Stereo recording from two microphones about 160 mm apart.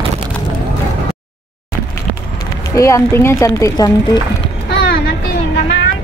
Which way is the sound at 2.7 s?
20° left (ahead or behind).